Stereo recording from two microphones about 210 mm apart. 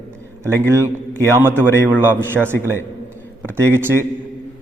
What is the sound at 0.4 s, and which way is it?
A man's voice, 15° right (ahead or behind).